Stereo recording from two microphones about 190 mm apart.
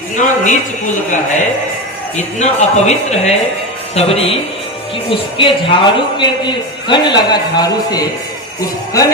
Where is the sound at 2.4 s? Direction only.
35° left (ahead or behind).